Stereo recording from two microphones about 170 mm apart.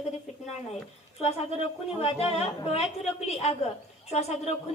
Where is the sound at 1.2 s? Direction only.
35° left (ahead or behind).